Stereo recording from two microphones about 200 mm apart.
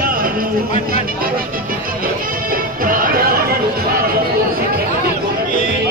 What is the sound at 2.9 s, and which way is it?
Music, 45° right (ahead or behind).